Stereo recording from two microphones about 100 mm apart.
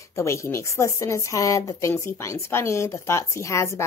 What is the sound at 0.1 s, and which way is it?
Speech, 30° left (ahead or behind).